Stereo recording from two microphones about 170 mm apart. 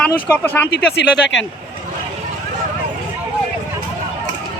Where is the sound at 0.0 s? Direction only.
10° left (ahead or behind).